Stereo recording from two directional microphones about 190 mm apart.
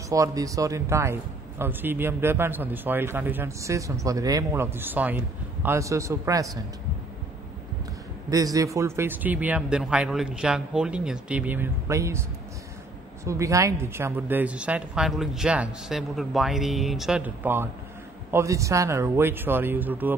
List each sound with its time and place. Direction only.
0.1 s a man's voice: 15° right (ahead or behind)
8.3 s a man's voice: 20° right (ahead or behind)